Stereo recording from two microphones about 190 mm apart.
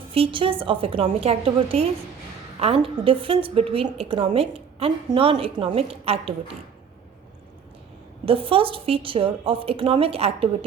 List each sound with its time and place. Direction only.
0.1 s a woman's voice: 30° right (ahead or behind)
8.2 s a woman's voice: 30° right (ahead or behind)